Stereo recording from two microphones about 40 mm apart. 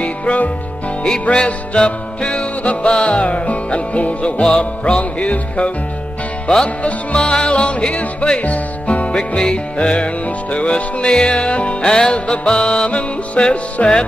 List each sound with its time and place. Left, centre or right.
0.0 s music: left
7.2 s music: left